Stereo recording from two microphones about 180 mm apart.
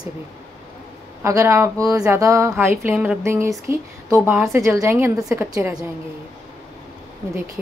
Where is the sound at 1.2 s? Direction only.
15° right (ahead or behind).